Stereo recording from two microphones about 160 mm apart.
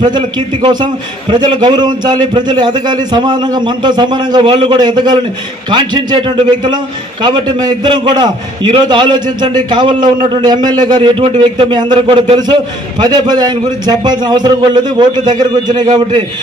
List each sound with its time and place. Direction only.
0.0 s a man's voice: 30° right (ahead or behind)